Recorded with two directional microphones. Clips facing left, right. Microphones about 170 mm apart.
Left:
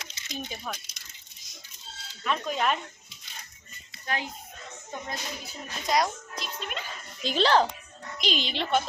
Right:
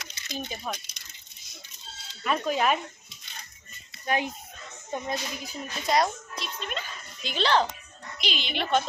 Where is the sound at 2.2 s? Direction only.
5° right (ahead or behind).